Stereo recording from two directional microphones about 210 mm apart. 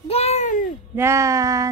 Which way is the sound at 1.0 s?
15° right (ahead or behind).